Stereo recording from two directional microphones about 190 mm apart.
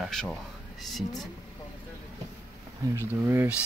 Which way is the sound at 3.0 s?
10° right (ahead or behind).